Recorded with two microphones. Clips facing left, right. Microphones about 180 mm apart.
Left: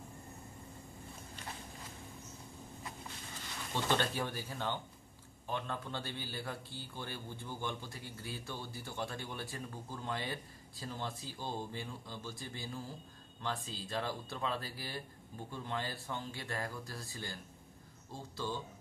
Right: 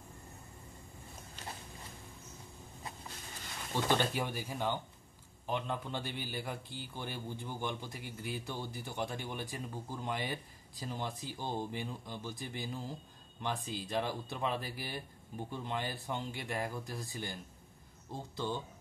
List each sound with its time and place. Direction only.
3.9 s a man's voice: 15° right (ahead or behind)